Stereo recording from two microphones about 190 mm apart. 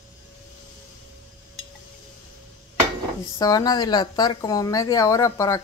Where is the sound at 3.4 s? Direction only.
20° left (ahead or behind).